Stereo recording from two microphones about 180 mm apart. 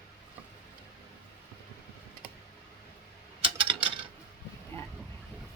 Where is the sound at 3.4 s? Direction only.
30° right (ahead or behind).